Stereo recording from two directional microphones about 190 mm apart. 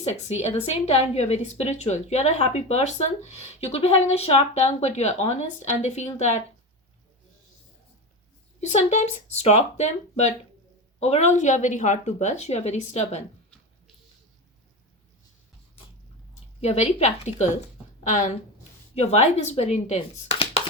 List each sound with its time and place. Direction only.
0.0 s a woman's voice: 35° left (ahead or behind)
8.6 s a woman's voice: 40° left (ahead or behind)
16.6 s a woman's voice: 35° left (ahead or behind)